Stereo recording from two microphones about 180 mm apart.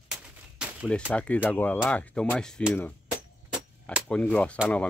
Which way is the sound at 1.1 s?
5° left (ahead or behind).